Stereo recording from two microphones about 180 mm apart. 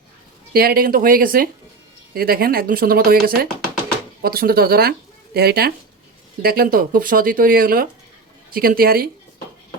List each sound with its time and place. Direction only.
0.5 s speech: 55° right (ahead or behind)